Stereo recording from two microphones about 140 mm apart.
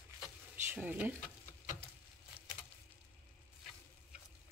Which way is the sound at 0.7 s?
10° right (ahead or behind).